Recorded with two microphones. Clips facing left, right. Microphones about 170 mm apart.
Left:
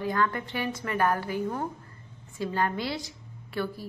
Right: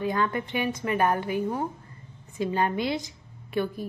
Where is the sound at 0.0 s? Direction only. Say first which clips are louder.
Right 1 dB; 20° right (ahead or behind).